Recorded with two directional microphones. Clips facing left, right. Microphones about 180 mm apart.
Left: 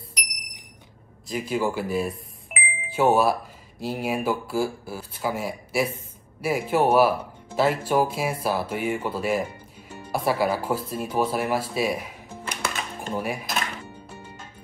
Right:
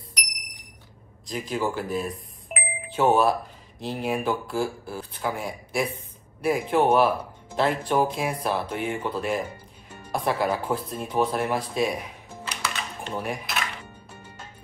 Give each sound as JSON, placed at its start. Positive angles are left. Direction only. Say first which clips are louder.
{"t": 1.2, "sound": "speech", "louder": "left 2 dB", "side_deg": 5}
{"t": 12.4, "sound": "music", "louder": "left 2 dB", "side_deg": 50}
{"t": 13.1, "sound": "speech", "louder": "left 2 dB", "side_deg": 5}